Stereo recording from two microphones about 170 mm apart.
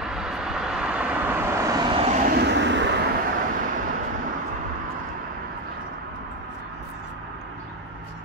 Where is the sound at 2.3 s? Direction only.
85° right.